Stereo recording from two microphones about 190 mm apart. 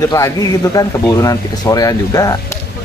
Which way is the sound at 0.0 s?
15° left (ahead or behind).